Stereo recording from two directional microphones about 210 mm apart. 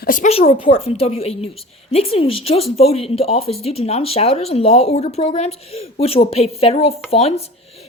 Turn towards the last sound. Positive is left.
turn(degrees=30)  # may be behind; listen again after turning